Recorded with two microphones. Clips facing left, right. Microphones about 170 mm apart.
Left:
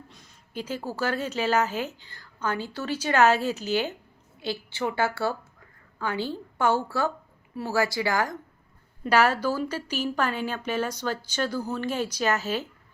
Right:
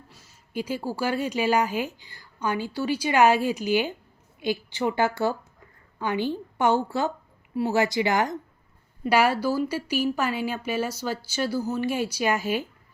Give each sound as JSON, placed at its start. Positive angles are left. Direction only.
{"t": 0.1, "sound": "a woman's voice", "side_deg": -5}
{"t": 9.0, "sound": "speech", "side_deg": -10}